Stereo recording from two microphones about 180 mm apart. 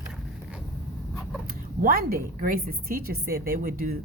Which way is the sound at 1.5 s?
55° right (ahead or behind).